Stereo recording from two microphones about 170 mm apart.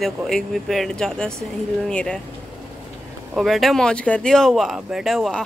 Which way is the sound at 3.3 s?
Centre (ahead or behind).